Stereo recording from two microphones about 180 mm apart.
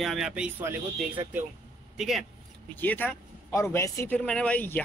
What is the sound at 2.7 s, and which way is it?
A man's voice, 10° left (ahead or behind).